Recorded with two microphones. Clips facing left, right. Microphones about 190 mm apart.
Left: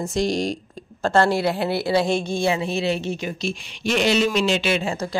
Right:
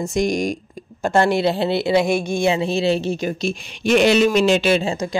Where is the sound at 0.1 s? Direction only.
15° right (ahead or behind).